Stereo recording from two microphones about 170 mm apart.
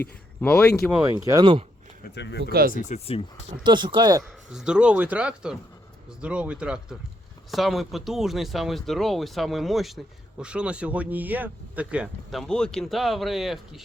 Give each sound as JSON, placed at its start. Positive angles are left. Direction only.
{"t": 0.4, "sound": "speech", "side_deg": 5}
{"t": 0.9, "sound": "speech", "side_deg": -15}
{"t": 2.0, "sound": "speech", "side_deg": 90}
{"t": 2.4, "sound": "speech", "side_deg": -65}
{"t": 2.7, "sound": "speech", "side_deg": 45}
{"t": 3.6, "sound": "speech", "side_deg": -25}
{"t": 4.2, "sound": "speech", "side_deg": -5}